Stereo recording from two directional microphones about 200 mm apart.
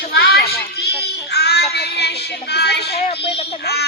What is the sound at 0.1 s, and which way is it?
Children playing, 55° left (ahead or behind).